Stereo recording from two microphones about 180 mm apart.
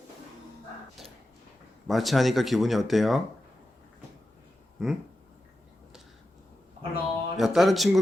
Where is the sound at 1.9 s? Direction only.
Centre (ahead or behind).